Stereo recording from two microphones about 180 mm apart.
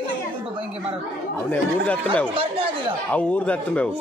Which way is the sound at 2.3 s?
30° right (ahead or behind).